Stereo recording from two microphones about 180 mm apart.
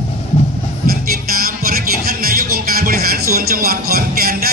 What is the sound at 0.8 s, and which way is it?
Music, 55° right (ahead or behind).